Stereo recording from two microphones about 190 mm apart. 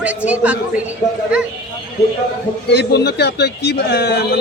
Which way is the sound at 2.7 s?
60° left (ahead or behind).